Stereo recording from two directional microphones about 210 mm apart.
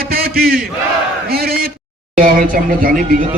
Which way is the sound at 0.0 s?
45° right (ahead or behind).